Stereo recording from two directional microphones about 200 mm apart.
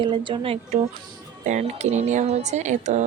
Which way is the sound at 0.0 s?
25° right (ahead or behind).